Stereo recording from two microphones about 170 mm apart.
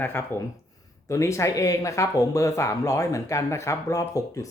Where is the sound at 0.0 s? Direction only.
15° left (ahead or behind).